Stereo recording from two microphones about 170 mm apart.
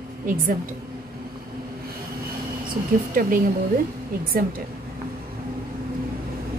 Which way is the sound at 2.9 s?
55° right (ahead or behind).